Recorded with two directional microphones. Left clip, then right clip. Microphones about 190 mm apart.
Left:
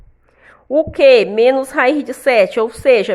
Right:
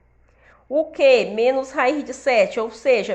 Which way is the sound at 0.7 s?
45° left (ahead or behind).